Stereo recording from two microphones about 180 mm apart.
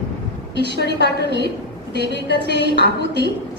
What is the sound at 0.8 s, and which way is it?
Speech, 65° left (ahead or behind).